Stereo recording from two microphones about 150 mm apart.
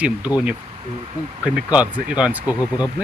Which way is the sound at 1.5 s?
10° right (ahead or behind).